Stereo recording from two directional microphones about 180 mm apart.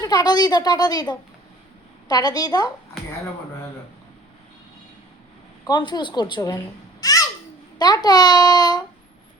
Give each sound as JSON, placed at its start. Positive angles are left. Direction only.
{"t": 0.0, "sound": "a woman's voice", "side_deg": 20}
{"t": 5.6, "sound": "a woman's voice", "side_deg": 25}